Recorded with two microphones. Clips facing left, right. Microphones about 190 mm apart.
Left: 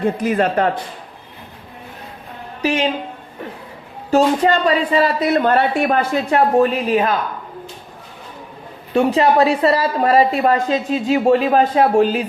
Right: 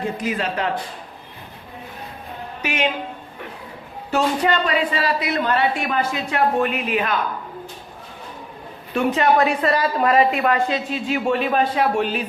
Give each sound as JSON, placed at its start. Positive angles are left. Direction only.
{"t": 0.0, "sound": "a woman's voice", "side_deg": 55}
{"t": 2.6, "sound": "a woman's voice", "side_deg": 35}
{"t": 4.1, "sound": "a woman's voice", "side_deg": 35}
{"t": 6.3, "sound": "a woman's voice", "side_deg": 35}
{"t": 8.9, "sound": "a woman's voice", "side_deg": 30}